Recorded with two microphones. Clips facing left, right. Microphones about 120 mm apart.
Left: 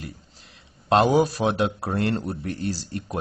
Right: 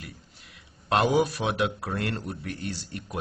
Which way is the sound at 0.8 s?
35° left (ahead or behind).